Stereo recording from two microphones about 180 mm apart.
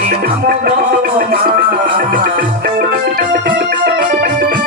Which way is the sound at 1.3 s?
55° right (ahead or behind).